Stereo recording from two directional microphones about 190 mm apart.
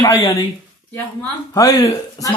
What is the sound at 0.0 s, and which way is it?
Speech, 20° left (ahead or behind).